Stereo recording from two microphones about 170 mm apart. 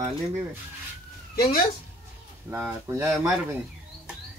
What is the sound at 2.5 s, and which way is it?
Speech, 10° right (ahead or behind).